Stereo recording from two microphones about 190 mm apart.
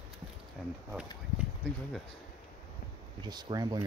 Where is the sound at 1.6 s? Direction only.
5° left (ahead or behind).